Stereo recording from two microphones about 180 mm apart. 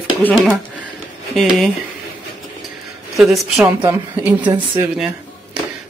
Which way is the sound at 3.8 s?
10° right (ahead or behind).